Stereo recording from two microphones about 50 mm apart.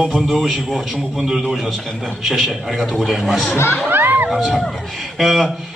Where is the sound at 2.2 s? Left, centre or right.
Centre.